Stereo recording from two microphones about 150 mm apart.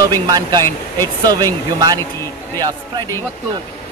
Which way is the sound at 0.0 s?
25° right (ahead or behind).